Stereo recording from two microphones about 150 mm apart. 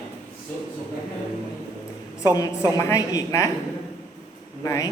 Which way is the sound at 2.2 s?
25° left (ahead or behind).